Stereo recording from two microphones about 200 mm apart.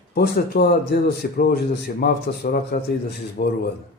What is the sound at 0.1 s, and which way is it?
A man's voice, 50° left (ahead or behind).